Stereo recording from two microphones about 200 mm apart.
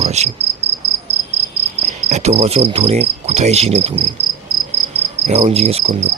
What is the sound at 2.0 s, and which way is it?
Cricket, 35° right (ahead or behind).